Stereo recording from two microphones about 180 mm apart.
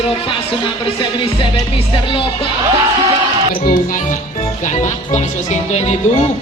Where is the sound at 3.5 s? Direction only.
50° left (ahead or behind).